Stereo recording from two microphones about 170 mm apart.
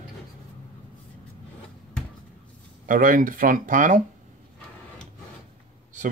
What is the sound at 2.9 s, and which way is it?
Speech, 55° right (ahead or behind).